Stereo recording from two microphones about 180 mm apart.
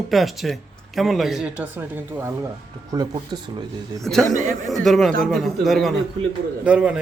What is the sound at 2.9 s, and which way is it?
Speech, 25° right (ahead or behind).